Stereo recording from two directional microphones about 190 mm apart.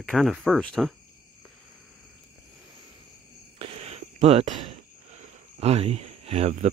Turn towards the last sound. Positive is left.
turn(degrees=-35)  # may be behind; listen again after turning